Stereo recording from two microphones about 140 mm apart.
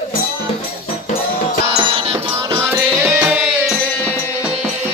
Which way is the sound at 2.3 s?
15° right (ahead or behind).